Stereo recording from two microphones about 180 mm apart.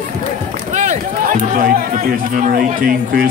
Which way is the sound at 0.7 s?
40° right (ahead or behind).